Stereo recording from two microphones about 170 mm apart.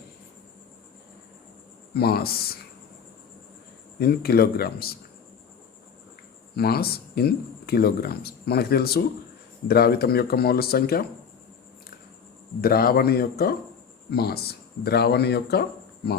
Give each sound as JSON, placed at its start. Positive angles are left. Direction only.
{"t": 1.9, "sound": "speech", "side_deg": 65}
{"t": 4.0, "sound": "speech", "side_deg": 65}
{"t": 6.6, "sound": "speech", "side_deg": 65}
{"t": 12.6, "sound": "speech", "side_deg": 60}